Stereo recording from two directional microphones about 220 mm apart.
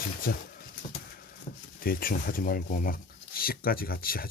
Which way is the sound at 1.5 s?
35° left (ahead or behind).